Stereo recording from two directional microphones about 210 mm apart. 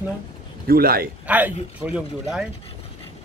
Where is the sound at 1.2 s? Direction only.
5° right (ahead or behind).